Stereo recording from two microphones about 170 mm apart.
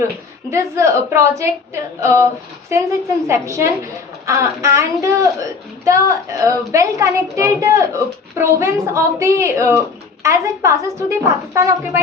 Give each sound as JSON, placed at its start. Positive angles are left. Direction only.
{"t": 0.5, "sound": "a woman's voice", "side_deg": -15}
{"t": 3.2, "sound": "a woman's voice", "side_deg": -15}